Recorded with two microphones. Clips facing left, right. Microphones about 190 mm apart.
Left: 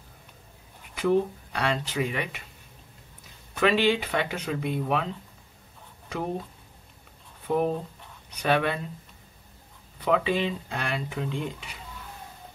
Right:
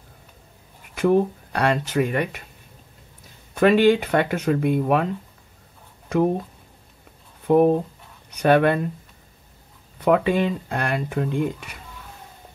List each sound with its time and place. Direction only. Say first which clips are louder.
0.9 s speech: right 5 dB; 55° right (ahead or behind)
3.5 s speech: right 7 dB; 50° right (ahead or behind)
7.4 s speech: right 9 dB; 50° right (ahead or behind)
9.9 s speech: right 6 dB; 55° right (ahead or behind)